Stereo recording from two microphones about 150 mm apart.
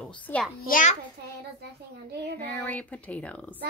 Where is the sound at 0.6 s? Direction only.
65° left (ahead or behind).